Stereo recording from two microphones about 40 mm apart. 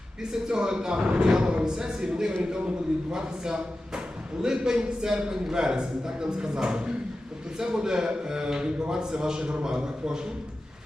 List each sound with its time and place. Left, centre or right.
0.2 s a man's voice: centre